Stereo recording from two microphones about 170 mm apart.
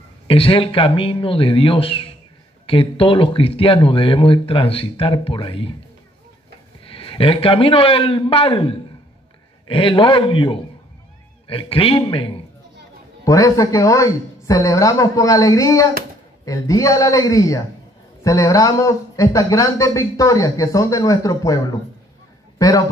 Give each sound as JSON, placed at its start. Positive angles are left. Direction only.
{"t": 0.3, "sound": "speech", "side_deg": 30}
{"t": 6.8, "sound": "a man's voice", "side_deg": 30}
{"t": 13.2, "sound": "a man's voice", "side_deg": 20}